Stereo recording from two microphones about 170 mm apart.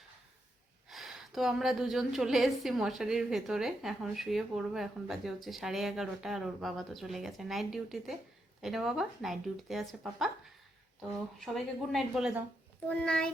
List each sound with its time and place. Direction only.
0.9 s a woman's voice: centre (ahead or behind)
11.3 s a woman's voice: centre (ahead or behind)